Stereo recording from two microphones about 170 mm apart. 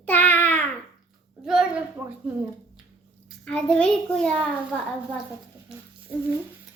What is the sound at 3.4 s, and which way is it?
Speech, 5° left (ahead or behind).